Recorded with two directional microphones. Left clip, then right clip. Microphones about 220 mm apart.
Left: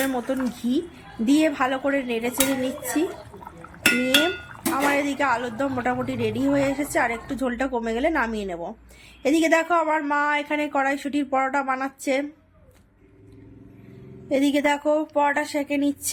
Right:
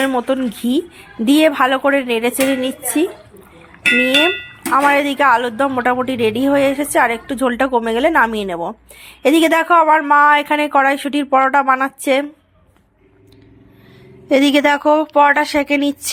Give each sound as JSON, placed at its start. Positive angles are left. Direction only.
{"t": 0.0, "sound": "a woman's voice", "side_deg": -15}
{"t": 4.7, "sound": "a woman's voice", "side_deg": -15}
{"t": 14.3, "sound": "a woman's voice", "side_deg": -15}